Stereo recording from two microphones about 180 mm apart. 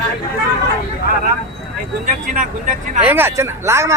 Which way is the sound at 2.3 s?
45° right (ahead or behind).